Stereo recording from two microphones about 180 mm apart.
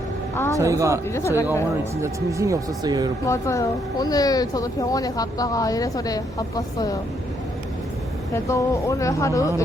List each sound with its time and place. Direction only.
0.3 s speech: 15° left (ahead or behind)
0.6 s a man's voice: 15° right (ahead or behind)
1.1 s speech: 15° left (ahead or behind)
2.0 s speech: 15° right (ahead or behind)
3.2 s speech: 15° left (ahead or behind)
8.3 s speech: 15° left (ahead or behind)